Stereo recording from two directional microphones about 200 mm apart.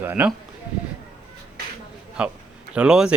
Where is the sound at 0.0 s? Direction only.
10° right (ahead or behind).